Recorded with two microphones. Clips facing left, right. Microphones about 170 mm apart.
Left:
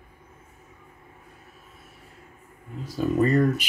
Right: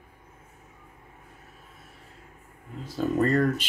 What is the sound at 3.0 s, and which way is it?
Speech, 10° left (ahead or behind).